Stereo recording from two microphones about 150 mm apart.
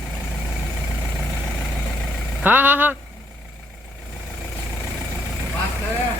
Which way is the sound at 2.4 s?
10° right (ahead or behind).